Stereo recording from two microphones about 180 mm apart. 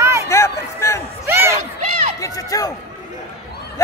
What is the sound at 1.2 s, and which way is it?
Crowd, 15° right (ahead or behind).